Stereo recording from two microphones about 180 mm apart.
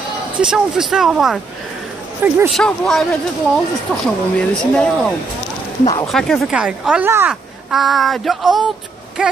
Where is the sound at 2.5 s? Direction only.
Centre (ahead or behind).